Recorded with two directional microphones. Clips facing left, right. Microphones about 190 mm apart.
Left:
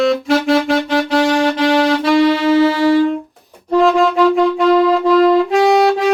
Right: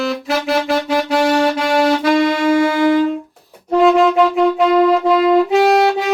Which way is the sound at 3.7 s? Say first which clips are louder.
Right 1 dB; 5° right (ahead or behind).